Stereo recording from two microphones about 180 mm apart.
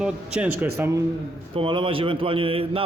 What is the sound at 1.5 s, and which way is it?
Speech, 30° right (ahead or behind).